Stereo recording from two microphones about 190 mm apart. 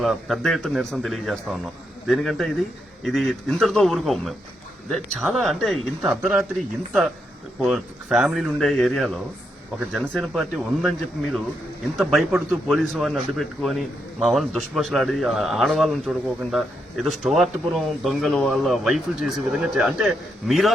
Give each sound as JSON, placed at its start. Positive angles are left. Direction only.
{"t": 0.0, "sound": "a man's voice", "side_deg": 0}